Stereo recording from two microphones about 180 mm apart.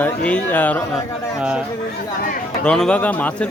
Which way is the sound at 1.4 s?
5° right (ahead or behind).